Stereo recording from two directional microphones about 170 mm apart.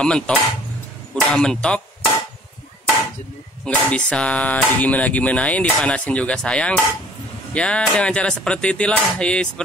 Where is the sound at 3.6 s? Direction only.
5° left (ahead or behind).